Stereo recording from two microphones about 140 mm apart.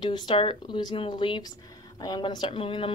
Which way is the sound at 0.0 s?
30° left (ahead or behind).